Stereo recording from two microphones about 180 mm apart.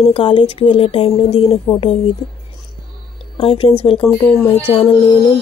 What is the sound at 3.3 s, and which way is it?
Speech, 30° left (ahead or behind).